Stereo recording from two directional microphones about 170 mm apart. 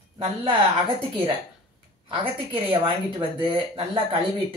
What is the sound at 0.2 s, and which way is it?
Speech, 35° right (ahead or behind).